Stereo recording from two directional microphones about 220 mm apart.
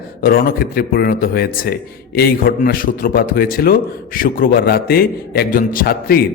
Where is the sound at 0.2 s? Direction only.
45° left (ahead or behind).